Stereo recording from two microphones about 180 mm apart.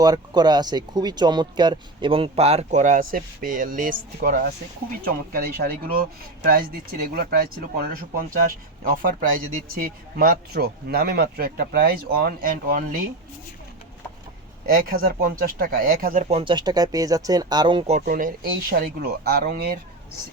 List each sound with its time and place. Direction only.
0.0 s speech: 20° right (ahead or behind); by 7.4 s 55° right (ahead or behind)
8.8 s speech: 50° right (ahead or behind)
14.7 s speech: 55° right (ahead or behind)
16.3 s speech: 30° right (ahead or behind)
18.0 s speech: 50° right (ahead or behind)